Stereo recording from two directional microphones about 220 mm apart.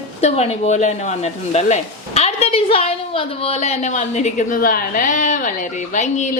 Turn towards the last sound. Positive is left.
turn(degrees=30)  # may be behind; listen again after turning